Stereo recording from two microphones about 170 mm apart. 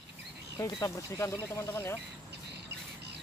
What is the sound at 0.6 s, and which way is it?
Speech, 20° left (ahead or behind).